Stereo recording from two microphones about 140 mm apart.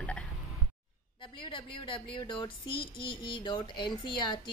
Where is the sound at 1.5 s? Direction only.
35° left (ahead or behind).